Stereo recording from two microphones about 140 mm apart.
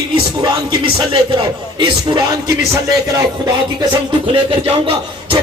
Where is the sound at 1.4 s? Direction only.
30° right (ahead or behind).